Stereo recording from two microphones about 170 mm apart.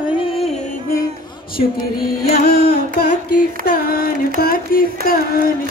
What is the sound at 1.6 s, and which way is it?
Carnatic music, 65° left (ahead or behind).